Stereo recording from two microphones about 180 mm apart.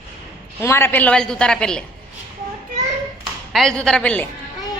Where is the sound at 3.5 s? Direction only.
5° left (ahead or behind).